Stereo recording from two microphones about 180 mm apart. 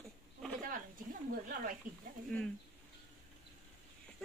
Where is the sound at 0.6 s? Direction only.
50° right (ahead or behind).